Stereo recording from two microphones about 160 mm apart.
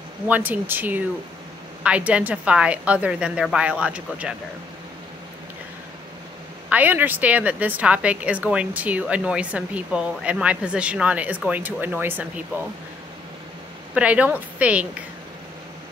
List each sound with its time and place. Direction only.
0.3 s speech: 10° right (ahead or behind)
6.7 s speech: 10° right (ahead or behind)
13.9 s speech: 10° right (ahead or behind)